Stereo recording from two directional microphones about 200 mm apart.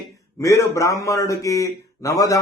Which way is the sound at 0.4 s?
15° left (ahead or behind).